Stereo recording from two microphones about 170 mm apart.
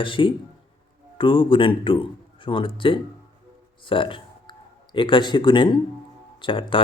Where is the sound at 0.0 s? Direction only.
30° left (ahead or behind).